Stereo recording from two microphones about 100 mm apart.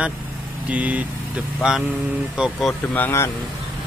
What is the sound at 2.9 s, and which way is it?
Speech, 20° left (ahead or behind).